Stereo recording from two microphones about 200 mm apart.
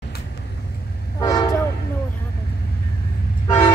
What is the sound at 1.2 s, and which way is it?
Train, 20° left (ahead or behind).